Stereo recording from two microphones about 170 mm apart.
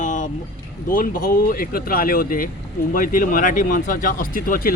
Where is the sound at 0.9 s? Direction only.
55° left (ahead or behind).